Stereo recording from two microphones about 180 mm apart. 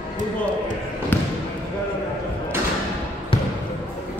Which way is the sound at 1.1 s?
10° left (ahead or behind).